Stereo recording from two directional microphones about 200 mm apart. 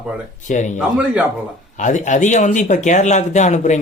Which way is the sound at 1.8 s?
40° left (ahead or behind).